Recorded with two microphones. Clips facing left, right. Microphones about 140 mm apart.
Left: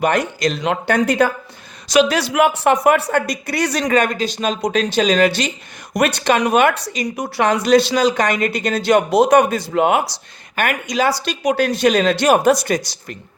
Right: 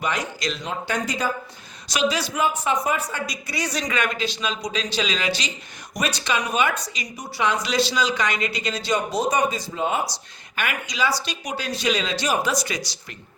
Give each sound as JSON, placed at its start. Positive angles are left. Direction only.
{"t": 0.0, "sound": "speech", "side_deg": 55}
{"t": 0.6, "sound": "speech", "side_deg": 65}
{"t": 3.9, "sound": "a woman's voice", "side_deg": 45}
{"t": 10.5, "sound": "speech", "side_deg": 50}